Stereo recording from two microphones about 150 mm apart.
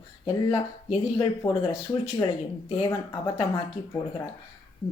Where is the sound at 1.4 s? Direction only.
25° left (ahead or behind).